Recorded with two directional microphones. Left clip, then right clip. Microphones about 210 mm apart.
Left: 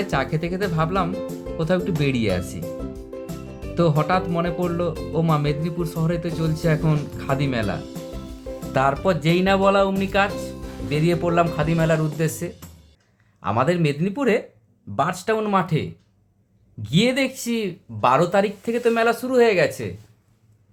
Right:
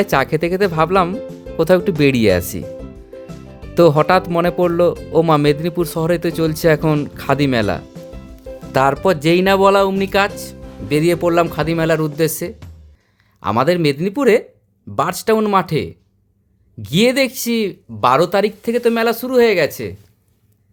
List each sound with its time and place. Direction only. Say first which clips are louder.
0.0 s speech: right 8 dB; 55° right (ahead or behind)
1.2 s music: even; centre (ahead or behind)
1.5 s speech: right 10 dB; 55° right (ahead or behind)
2.6 s music: even; centre (ahead or behind)
3.8 s speech: right 9 dB; 55° right (ahead or behind)